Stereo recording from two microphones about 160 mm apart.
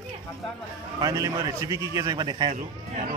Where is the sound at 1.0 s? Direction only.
20° right (ahead or behind).